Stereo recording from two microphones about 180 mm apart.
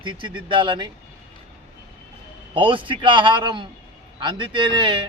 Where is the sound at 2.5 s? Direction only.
30° right (ahead or behind).